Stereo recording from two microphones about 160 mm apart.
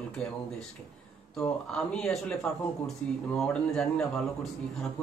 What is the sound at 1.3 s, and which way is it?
Speech, 5° left (ahead or behind).